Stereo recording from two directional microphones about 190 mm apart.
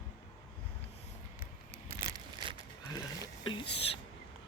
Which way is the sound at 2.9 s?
25° left (ahead or behind).